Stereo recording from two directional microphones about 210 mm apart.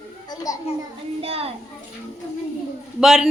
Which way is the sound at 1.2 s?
30° right (ahead or behind).